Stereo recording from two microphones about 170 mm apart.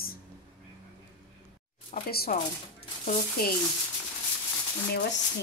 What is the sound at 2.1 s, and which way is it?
Speech, 65° left (ahead or behind).